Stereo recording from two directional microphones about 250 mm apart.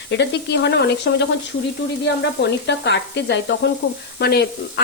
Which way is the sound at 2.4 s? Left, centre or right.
Left.